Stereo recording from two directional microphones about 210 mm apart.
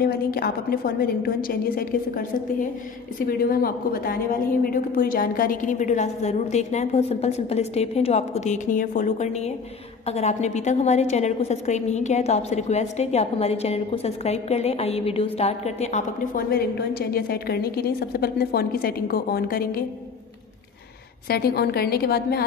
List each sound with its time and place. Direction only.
0.0 s a woman's voice: 45° left (ahead or behind)
3.3 s a woman's voice: 45° left (ahead or behind)
16.4 s a woman's voice: 45° left (ahead or behind)
21.3 s a woman's voice: 45° left (ahead or behind)